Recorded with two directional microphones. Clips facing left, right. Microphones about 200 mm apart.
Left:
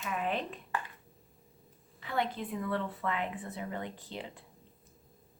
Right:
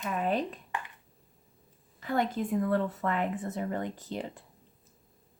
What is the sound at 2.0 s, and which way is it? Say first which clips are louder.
Speech: right 5 dB; 45° right (ahead or behind).